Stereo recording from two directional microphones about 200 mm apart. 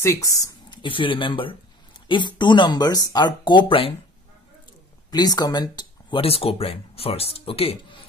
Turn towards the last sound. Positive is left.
turn(degrees=30)  # may be behind; listen again after turning